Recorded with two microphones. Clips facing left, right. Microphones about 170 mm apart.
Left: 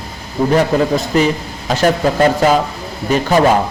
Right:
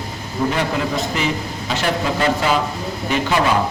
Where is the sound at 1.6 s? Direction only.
45° left (ahead or behind).